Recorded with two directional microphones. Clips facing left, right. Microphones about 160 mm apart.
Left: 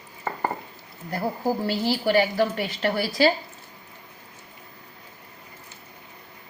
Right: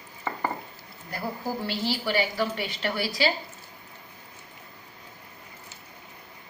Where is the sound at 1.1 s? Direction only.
40° left (ahead or behind).